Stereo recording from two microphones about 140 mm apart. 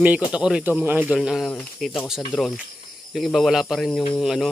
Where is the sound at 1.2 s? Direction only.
Centre (ahead or behind).